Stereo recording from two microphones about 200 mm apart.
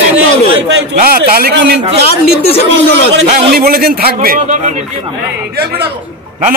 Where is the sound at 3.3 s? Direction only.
50° right (ahead or behind).